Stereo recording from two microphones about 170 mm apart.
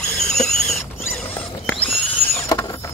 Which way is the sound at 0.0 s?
5° left (ahead or behind).